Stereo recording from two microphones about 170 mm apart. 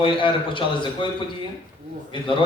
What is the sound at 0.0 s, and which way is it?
Speech, 30° left (ahead or behind).